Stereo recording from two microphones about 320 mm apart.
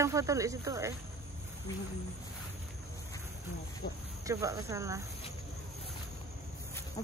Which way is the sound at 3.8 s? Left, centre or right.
Left.